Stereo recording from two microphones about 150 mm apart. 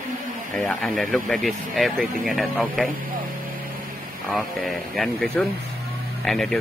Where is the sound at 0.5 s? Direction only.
Centre (ahead or behind).